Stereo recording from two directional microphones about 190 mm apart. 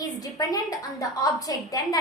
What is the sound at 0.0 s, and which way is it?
A woman's voice, 20° left (ahead or behind).